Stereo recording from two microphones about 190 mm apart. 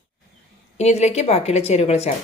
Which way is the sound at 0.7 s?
35° left (ahead or behind).